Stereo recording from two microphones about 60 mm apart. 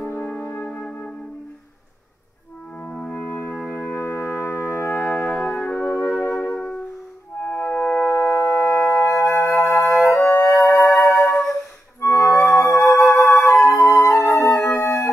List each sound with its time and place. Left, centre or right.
0.0 s music: left
0.7 s music: centre
3.0 s music: left
4.0 s music: left
5.1 s music: left
5.9 s music: left
8.2 s music: left
9.1 s music: left
12.0 s music: left